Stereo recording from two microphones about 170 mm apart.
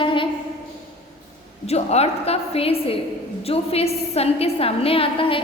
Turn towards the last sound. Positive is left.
turn(degrees=30)  # may be behind; listen again after turning